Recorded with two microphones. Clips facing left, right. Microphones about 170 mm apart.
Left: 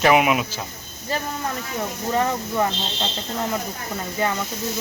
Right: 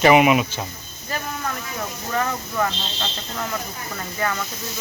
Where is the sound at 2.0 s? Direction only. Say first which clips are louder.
Left 3 dB; 20° left (ahead or behind).